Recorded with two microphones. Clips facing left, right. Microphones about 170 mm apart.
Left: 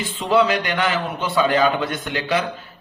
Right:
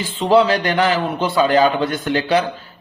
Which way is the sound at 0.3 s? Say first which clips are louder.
Right 4 dB; 30° right (ahead or behind).